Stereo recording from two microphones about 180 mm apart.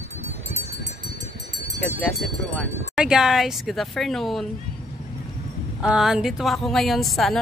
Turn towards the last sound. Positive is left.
turn(degrees=0)  # may be behind; listen again after turning